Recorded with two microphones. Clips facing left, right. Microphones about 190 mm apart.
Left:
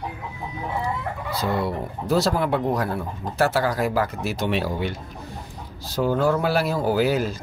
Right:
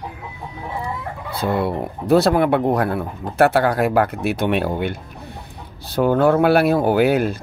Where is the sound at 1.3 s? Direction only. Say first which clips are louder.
Right 4 dB; 60° right (ahead or behind).